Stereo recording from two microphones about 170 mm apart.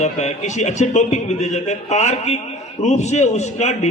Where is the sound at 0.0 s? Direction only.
45° left (ahead or behind).